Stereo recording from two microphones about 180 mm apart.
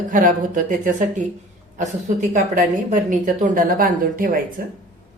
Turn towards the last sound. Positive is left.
turn(degrees=-50)  # may be behind; listen again after turning